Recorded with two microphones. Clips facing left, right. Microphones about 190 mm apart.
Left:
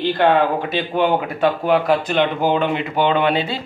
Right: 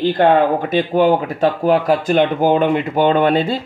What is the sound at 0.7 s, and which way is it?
Speech, 40° right (ahead or behind).